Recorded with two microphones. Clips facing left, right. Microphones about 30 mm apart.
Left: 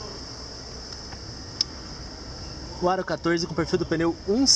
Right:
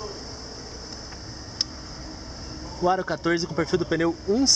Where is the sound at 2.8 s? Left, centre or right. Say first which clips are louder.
Right 1 dB; centre.